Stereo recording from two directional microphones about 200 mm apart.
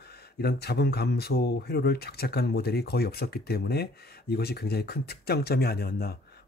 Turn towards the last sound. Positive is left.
turn(degrees=50)  # may be behind; listen again after turning